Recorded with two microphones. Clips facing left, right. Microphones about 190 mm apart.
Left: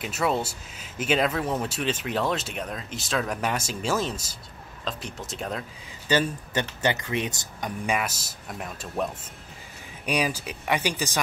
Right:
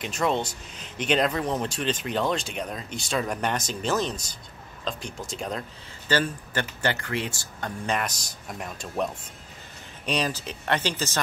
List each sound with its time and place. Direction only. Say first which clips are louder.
0.0 s speech: even; 5° left (ahead or behind)
6.0 s speech: left 1 dB; 20° left (ahead or behind)